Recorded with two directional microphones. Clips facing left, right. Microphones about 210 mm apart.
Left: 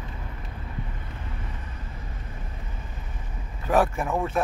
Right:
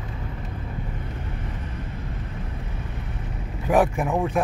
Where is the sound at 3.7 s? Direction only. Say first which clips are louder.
Right 2 dB; 15° right (ahead or behind).